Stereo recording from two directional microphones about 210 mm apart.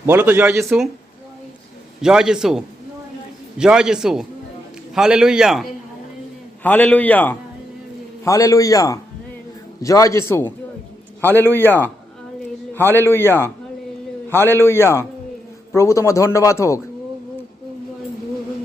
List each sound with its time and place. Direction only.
0.0 s speech: 10° right (ahead or behind)
2.0 s a man's voice: 5° right (ahead or behind)
6.6 s speech: 10° left (ahead or behind)